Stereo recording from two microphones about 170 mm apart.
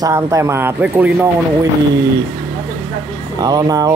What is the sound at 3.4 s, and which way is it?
Speech, 25° right (ahead or behind).